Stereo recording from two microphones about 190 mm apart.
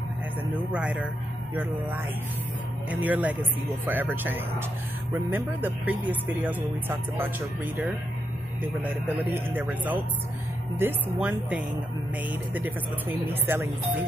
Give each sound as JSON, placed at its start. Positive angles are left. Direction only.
{"t": 0.7, "sound": "speech", "side_deg": -5}
{"t": 9.5, "sound": "speech", "side_deg": -10}